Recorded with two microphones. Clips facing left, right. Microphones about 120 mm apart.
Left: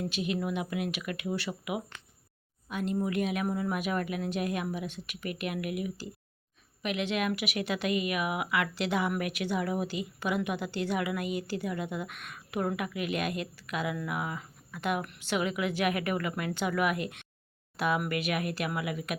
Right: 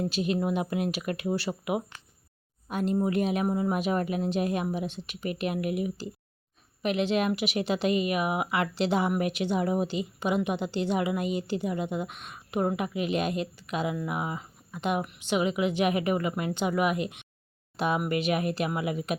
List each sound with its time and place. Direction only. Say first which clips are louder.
0.1 s speech: right 4 dB; 35° right (ahead or behind)